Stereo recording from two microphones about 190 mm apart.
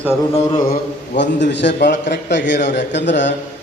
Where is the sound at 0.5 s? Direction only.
50° left (ahead or behind); by 3.4 s 70° left (ahead or behind).